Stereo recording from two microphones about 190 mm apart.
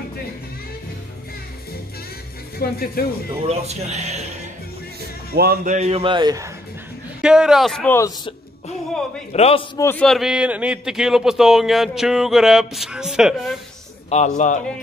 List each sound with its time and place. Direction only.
2.6 s speech: 50° left (ahead or behind)
3.4 s speech: 35° right (ahead or behind)
5.3 s speech: 55° right (ahead or behind); by 6.5 s 20° right (ahead or behind)
7.2 s a man's voice: 5° right (ahead or behind)
9.3 s a man's voice: 30° left (ahead or behind)
9.8 s a man's voice: 10° left (ahead or behind)
14.1 s a man's voice: 40° left (ahead or behind)